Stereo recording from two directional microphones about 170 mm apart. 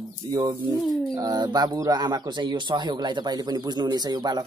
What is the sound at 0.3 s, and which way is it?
Speech, 30° right (ahead or behind).